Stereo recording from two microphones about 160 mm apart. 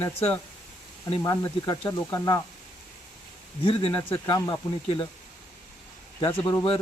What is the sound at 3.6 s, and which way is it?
Speech, 35° left (ahead or behind).